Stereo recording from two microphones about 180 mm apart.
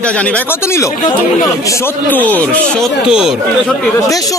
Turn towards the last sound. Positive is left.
turn(degrees=20)  # may be behind; listen again after turning